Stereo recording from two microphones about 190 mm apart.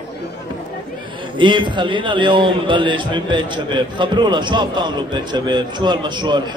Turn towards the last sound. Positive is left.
turn(degrees=-25)  # may be behind; listen again after turning